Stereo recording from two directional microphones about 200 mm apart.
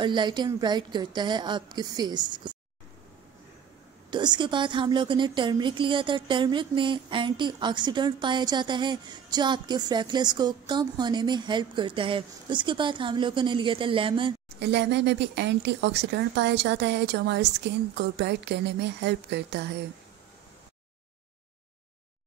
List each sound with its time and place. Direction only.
0.0 s a woman's voice: 25° right (ahead or behind)
4.1 s a woman's voice: 20° right (ahead or behind)
14.6 s speech: 60° right (ahead or behind)